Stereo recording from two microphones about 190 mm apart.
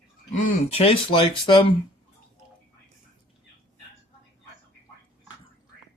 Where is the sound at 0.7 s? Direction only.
30° left (ahead or behind).